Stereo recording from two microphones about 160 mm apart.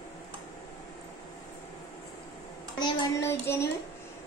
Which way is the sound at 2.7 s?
30° left (ahead or behind).